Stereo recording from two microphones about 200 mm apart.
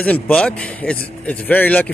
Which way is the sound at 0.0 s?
5° left (ahead or behind).